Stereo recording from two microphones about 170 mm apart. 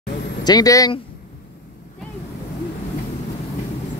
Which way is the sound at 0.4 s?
25° left (ahead or behind).